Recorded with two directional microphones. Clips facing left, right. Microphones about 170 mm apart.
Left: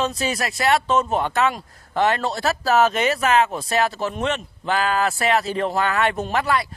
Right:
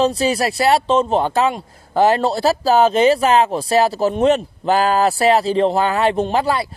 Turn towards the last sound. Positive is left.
turn(degrees=-30)  # may be behind; listen again after turning